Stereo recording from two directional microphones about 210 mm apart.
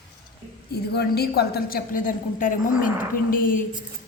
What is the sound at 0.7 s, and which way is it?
A woman's voice, 50° left (ahead or behind).